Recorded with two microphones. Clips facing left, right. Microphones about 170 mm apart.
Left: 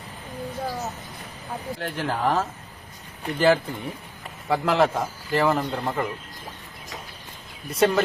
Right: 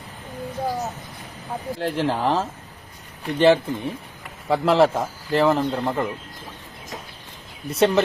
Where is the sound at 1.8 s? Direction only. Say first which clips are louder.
Right 4 dB; 30° right (ahead or behind).